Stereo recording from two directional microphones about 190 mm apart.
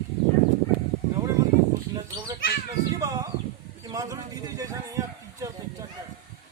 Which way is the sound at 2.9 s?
15° right (ahead or behind).